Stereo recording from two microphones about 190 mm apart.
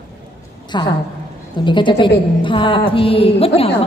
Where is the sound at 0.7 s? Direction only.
25° left (ahead or behind).